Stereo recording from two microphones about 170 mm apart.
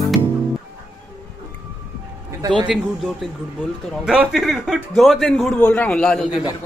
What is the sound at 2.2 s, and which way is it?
Music, 25° right (ahead or behind).